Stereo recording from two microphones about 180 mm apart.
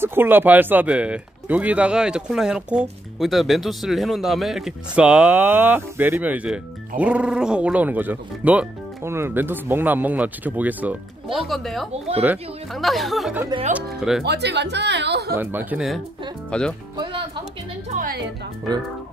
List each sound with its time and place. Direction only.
0.0 s speech: 10° right (ahead or behind)
14.2 s speech: 70° right (ahead or behind)
15.3 s speech: 10° right (ahead or behind)
16.4 s speech: 5° left (ahead or behind)
17.8 s a woman's voice: 45° right (ahead or behind)